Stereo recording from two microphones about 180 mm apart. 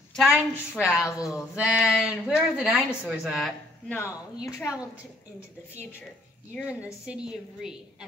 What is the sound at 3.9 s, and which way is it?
Speech, 15° left (ahead or behind).